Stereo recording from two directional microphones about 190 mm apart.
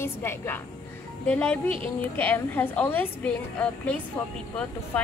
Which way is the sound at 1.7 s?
30° right (ahead or behind).